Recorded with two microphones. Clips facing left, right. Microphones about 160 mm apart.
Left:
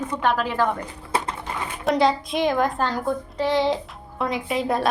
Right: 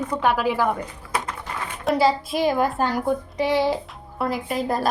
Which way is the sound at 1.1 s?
30° left (ahead or behind).